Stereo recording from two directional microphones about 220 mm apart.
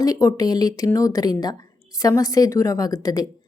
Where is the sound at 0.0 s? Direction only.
15° left (ahead or behind).